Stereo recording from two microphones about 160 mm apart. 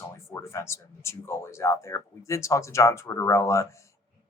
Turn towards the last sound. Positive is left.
turn(degrees=20)  # may be behind; listen again after turning